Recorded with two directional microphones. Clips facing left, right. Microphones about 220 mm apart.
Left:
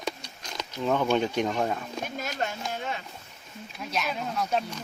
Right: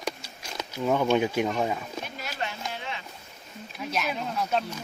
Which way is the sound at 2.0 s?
45° left (ahead or behind).